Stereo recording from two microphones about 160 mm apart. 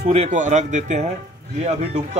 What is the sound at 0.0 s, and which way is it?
Speech, 40° right (ahead or behind).